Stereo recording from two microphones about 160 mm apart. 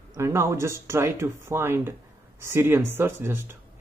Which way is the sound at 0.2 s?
15° right (ahead or behind).